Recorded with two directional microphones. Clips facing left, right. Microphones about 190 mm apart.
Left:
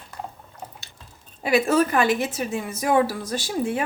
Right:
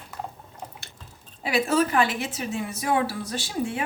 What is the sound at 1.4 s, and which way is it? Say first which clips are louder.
A woman's voice: left 3 dB; 45° left (ahead or behind).